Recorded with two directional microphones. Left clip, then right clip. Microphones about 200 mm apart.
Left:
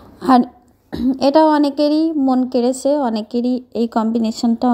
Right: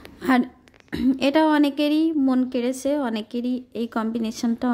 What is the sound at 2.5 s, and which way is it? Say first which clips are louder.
Speech: left 8 dB; 20° right (ahead or behind).